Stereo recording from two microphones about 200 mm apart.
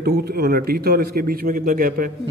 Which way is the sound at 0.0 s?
50° right (ahead or behind).